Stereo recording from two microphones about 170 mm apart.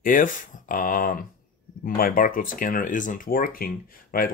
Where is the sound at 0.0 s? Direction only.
50° left (ahead or behind).